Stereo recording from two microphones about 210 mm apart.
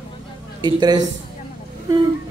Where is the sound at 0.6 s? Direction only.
20° right (ahead or behind).